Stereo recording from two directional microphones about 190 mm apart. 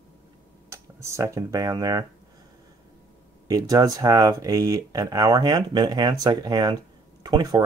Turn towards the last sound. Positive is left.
turn(degrees=-20)  # may be behind; listen again after turning